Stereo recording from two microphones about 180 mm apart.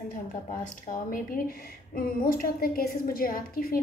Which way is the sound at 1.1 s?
50° left (ahead or behind).